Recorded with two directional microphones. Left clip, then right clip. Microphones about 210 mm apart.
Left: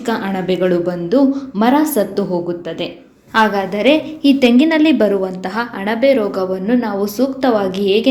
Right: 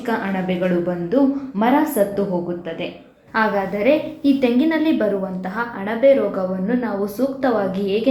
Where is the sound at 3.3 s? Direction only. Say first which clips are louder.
Left 5 dB; 40° left (ahead or behind).